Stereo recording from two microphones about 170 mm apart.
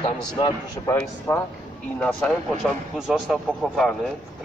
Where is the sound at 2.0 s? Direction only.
Centre (ahead or behind).